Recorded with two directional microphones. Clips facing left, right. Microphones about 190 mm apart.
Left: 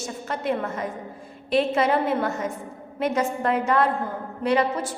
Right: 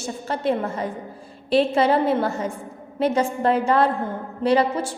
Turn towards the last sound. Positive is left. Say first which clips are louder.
# right 3 dB
turn(degrees=-30)  # may be behind; listen again after turning